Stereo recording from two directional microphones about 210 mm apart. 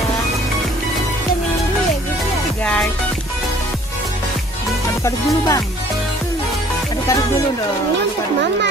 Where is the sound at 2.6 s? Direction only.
5° left (ahead or behind).